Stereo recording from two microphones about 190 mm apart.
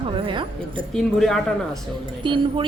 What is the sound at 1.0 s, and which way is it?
Speech, centre (ahead or behind).